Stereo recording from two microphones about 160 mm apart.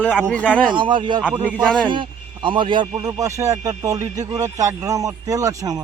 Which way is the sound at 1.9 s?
30° right (ahead or behind).